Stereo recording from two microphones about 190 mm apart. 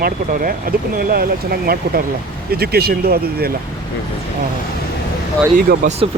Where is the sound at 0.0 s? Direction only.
50° right (ahead or behind).